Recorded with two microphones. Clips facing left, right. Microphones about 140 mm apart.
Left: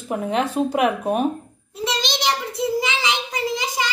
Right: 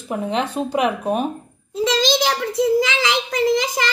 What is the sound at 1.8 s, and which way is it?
Child singing, 90° right.